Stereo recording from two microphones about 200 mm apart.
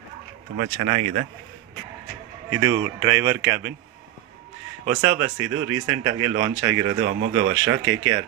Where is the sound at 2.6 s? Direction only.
15° right (ahead or behind).